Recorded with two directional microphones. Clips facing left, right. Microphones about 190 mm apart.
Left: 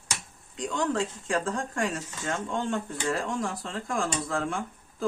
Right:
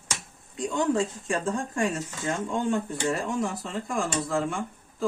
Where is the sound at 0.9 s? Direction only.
10° right (ahead or behind).